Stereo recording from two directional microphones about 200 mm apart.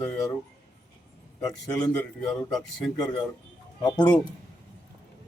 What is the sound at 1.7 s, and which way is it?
A man's voice, 5° left (ahead or behind).